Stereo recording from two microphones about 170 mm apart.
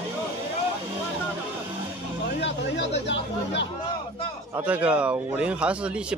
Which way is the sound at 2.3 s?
90° left.